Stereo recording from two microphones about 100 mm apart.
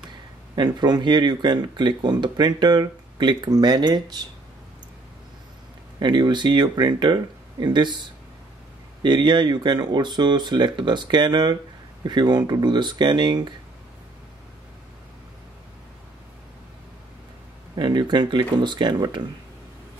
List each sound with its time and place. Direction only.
0.6 s speech: 45° right (ahead or behind)
5.9 s speech: 50° right (ahead or behind)
9.0 s speech: 50° right (ahead or behind)
17.7 s speech: 50° right (ahead or behind)